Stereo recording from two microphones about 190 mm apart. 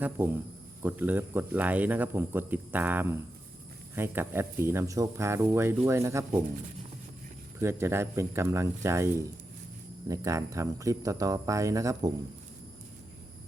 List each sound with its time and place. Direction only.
0.2 s speech: 10° right (ahead or behind)
7.6 s speech: 15° right (ahead or behind)